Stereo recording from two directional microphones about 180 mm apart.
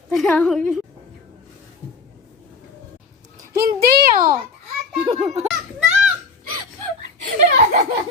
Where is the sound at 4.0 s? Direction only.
55° right (ahead or behind).